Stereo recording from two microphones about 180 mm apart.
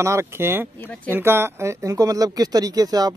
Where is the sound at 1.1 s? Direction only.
15° right (ahead or behind).